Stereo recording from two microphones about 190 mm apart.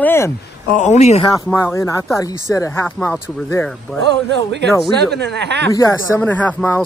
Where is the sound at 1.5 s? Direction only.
15° left (ahead or behind).